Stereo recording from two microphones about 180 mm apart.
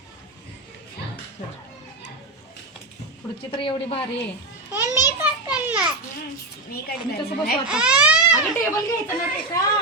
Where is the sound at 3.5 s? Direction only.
30° left (ahead or behind).